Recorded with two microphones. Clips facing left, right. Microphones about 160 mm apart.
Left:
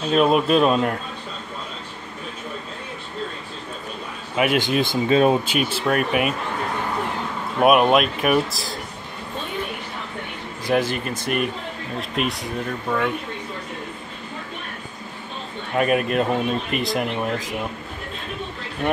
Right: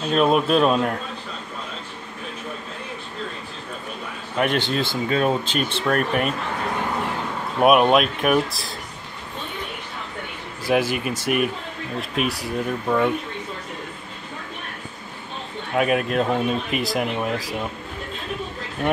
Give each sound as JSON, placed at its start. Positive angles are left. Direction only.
{"t": 0.1, "sound": "speech", "side_deg": 0}
{"t": 4.4, "sound": "speech", "side_deg": 10}
{"t": 7.6, "sound": "speech", "side_deg": 0}
{"t": 10.7, "sound": "speech", "side_deg": -10}
{"t": 12.2, "sound": "speech", "side_deg": -5}
{"t": 15.7, "sound": "speech", "side_deg": 0}